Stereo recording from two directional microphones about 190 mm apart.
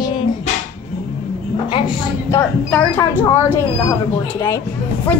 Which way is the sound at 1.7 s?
20° left (ahead or behind).